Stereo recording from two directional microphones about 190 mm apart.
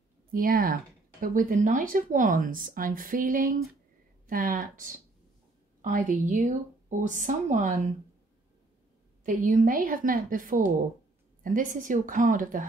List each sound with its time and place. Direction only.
0.3 s speech: 50° right (ahead or behind)
9.2 s speech: 45° right (ahead or behind)